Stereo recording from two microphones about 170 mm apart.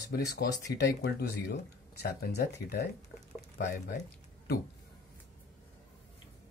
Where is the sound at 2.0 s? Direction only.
70° left (ahead or behind).